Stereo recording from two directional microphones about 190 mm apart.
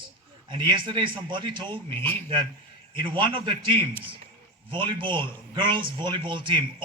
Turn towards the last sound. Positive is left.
turn(degrees=-25)  # may be behind; listen again after turning